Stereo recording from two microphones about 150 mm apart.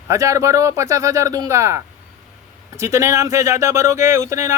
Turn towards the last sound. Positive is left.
turn(degrees=-20)  # may be behind; listen again after turning